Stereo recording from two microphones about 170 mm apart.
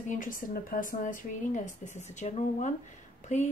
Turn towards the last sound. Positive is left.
turn(degrees=45)  # may be behind; listen again after turning